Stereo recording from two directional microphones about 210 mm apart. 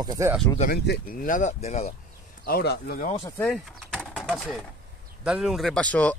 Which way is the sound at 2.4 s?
45° left (ahead or behind).